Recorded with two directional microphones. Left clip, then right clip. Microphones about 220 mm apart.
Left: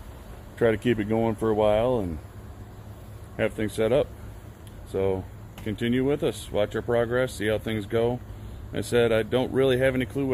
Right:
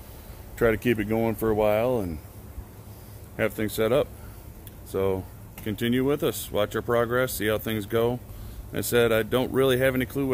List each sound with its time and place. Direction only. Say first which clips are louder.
0.6 s speech: even; centre (ahead or behind)
3.3 s speech: even; 5° right (ahead or behind)